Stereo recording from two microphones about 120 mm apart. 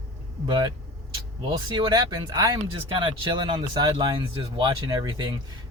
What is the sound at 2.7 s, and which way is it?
Speech, 45° right (ahead or behind).